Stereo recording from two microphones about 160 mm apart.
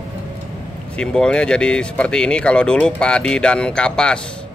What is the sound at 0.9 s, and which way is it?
Speech, 5° left (ahead or behind).